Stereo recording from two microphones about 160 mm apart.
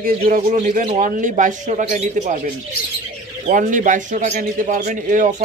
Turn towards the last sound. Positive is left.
turn(degrees=-55)  # may be behind; listen again after turning